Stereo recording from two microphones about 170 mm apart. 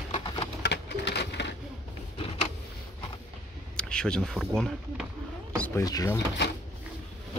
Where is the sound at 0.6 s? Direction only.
85° left.